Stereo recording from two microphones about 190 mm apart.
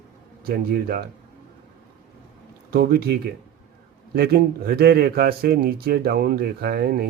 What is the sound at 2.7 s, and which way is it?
Speech, 55° right (ahead or behind).